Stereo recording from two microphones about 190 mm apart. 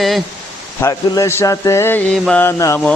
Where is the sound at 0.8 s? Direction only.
15° left (ahead or behind).